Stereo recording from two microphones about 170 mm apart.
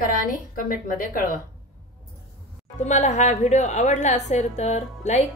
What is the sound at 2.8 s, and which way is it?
A woman's voice, 45° left (ahead or behind).